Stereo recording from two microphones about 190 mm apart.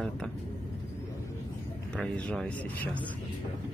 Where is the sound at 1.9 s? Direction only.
5° left (ahead or behind).